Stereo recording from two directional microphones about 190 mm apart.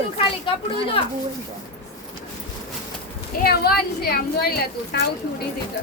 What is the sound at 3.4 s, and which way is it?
A woman's voice, 55° left (ahead or behind).